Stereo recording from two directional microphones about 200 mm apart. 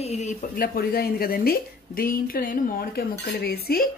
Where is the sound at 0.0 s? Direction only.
35° left (ahead or behind).